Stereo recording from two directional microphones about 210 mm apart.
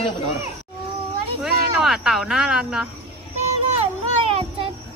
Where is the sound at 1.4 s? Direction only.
Centre (ahead or behind).